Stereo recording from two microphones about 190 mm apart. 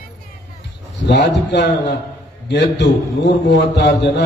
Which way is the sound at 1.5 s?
60° left (ahead or behind).